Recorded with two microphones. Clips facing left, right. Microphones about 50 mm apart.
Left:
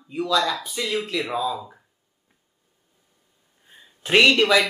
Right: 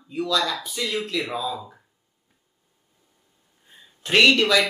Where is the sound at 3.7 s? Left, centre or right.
Centre.